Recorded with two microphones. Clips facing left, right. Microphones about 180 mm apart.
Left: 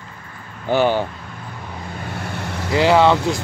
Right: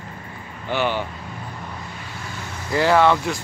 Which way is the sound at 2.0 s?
65° left (ahead or behind).